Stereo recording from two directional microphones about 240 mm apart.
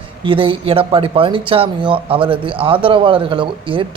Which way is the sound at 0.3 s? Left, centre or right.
Right.